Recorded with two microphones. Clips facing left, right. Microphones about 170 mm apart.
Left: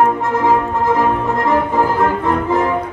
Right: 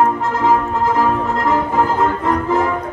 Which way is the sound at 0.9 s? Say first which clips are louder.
Left 1 dB; 20° left (ahead or behind).